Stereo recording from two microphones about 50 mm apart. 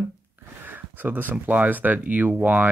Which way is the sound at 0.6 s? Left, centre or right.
Right.